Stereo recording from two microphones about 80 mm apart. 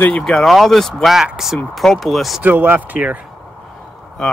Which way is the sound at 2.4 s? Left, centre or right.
Right.